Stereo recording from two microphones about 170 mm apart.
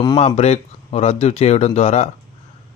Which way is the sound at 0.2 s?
40° left (ahead or behind).